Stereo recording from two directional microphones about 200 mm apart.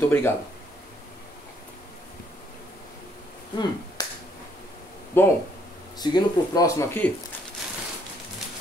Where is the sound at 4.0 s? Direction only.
20° left (ahead or behind).